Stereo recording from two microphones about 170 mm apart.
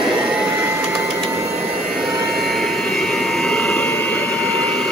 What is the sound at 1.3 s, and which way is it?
Vehicle, 15° right (ahead or behind).